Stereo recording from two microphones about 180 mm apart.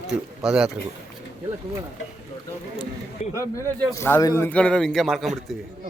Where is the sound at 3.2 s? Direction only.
35° left (ahead or behind).